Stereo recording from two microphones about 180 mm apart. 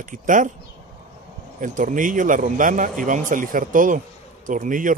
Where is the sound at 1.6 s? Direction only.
45° right (ahead or behind).